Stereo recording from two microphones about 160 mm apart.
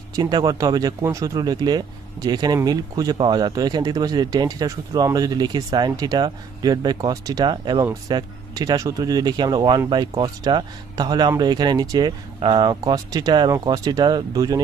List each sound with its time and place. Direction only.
0.1 s speech: 25° right (ahead or behind)